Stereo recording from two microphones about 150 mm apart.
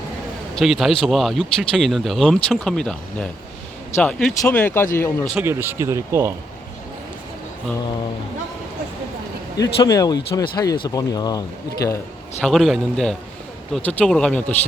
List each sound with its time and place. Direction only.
0.5 s speech: centre (ahead or behind); by 5.3 s 15° left (ahead or behind)
5.3 s speech: 10° right (ahead or behind)
9.6 s speech: 25° left (ahead or behind)
12.4 s speech: centre (ahead or behind)